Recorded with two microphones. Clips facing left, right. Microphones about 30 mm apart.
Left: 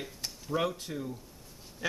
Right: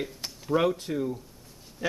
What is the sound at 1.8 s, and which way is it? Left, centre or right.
Speech, centre.